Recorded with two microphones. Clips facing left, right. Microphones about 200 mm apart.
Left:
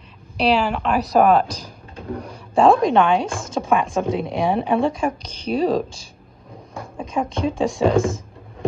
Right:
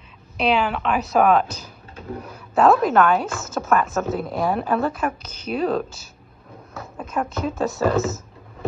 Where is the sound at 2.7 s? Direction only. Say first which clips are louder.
Left 1 dB; 5° right (ahead or behind).